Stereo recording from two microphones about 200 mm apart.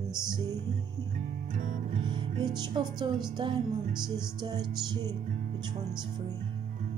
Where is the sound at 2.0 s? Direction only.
25° right (ahead or behind).